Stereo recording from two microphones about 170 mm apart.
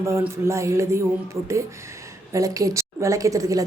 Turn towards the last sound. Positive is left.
turn(degrees=-20)  # may be behind; listen again after turning